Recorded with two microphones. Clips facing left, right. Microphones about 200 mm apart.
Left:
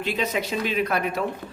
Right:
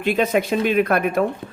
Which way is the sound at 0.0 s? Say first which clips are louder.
Right 7 dB; 55° right (ahead or behind).